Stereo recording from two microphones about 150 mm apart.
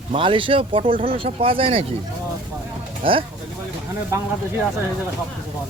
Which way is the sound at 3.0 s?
35° right (ahead or behind).